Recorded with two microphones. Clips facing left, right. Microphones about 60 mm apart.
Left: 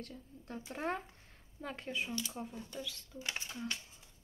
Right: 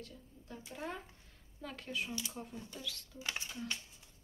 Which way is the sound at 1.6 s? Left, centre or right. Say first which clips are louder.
Left 2 dB; left.